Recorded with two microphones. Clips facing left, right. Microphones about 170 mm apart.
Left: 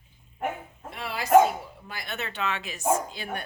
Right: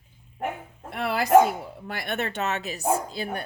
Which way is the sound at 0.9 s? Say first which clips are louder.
Right 2 dB; 60° right (ahead or behind).